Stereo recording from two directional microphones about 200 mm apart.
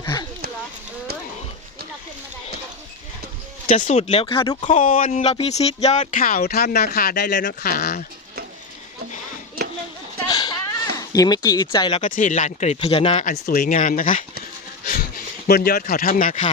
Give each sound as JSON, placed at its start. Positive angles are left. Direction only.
{"t": 0.0, "sound": "a sound", "side_deg": 20}
{"t": 3.7, "sound": "speech", "side_deg": 35}
{"t": 10.2, "sound": "cat", "side_deg": 20}
{"t": 12.0, "sound": "speech", "side_deg": 40}
{"t": 13.2, "sound": "speech", "side_deg": 45}
{"t": 15.4, "sound": "speech", "side_deg": 50}